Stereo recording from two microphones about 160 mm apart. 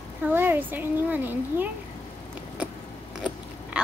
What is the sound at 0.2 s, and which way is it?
A woman's voice, 15° right (ahead or behind).